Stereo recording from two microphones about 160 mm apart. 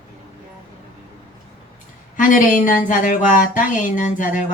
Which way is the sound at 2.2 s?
55° left (ahead or behind).